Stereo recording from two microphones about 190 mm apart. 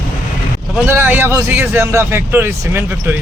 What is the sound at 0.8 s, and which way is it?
A man's voice, 10° right (ahead or behind).